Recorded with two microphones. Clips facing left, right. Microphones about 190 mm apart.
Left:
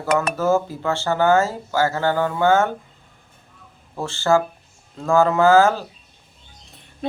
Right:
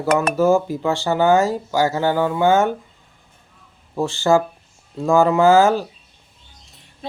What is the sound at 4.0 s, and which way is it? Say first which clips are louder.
Speech: right 2 dB; 15° right (ahead or behind).